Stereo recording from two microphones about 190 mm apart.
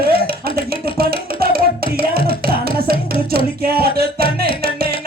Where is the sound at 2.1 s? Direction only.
55° right (ahead or behind).